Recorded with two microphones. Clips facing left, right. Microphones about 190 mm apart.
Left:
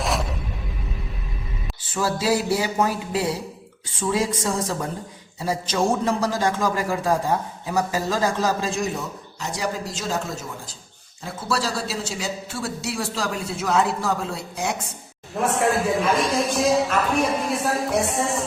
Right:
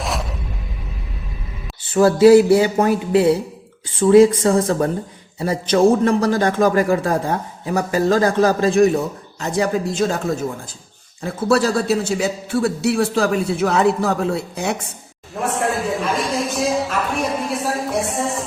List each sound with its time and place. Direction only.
0.0 s music: centre (ahead or behind)
1.9 s a man's voice: 60° right (ahead or behind)
15.4 s a man's voice: centre (ahead or behind)